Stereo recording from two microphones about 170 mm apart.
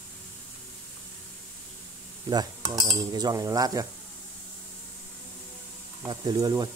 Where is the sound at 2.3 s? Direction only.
25° right (ahead or behind).